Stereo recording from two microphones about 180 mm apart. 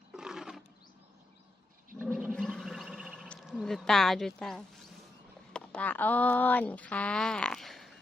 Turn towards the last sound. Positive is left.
turn(degrees=0)  # may be behind; listen again after turning